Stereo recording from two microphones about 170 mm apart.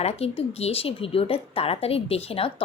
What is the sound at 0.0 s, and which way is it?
A woman's voice, 35° left (ahead or behind).